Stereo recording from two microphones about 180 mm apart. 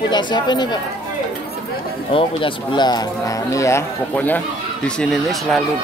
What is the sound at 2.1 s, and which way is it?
Speech, 25° left (ahead or behind).